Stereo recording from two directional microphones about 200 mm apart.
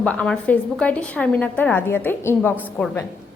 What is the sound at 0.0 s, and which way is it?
A woman's voice, 5° left (ahead or behind).